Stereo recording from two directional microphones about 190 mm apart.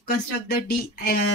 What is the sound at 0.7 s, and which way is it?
Speech, 55° left (ahead or behind).